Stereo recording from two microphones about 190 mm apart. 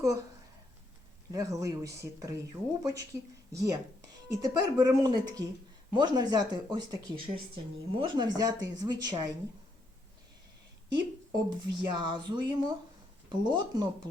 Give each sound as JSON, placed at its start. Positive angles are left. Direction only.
{"t": 1.3, "sound": "speech", "side_deg": -15}
{"t": 11.3, "sound": "speech", "side_deg": -25}